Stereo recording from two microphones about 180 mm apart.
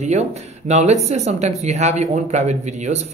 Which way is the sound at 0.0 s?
40° right (ahead or behind).